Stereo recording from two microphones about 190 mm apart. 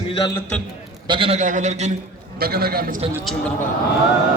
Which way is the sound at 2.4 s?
50° right (ahead or behind).